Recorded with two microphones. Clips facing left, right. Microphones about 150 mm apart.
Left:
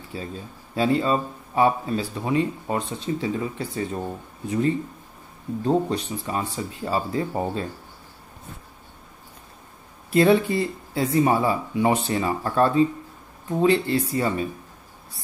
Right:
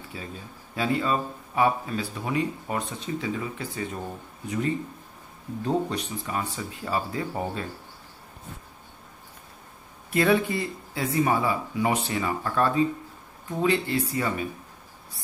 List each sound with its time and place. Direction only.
0.1 s speech: 30° left (ahead or behind)
5.7 s speech: 30° left (ahead or behind)
10.1 s speech: 30° left (ahead or behind)